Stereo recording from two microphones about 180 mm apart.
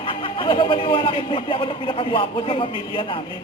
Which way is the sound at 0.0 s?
30° left (ahead or behind).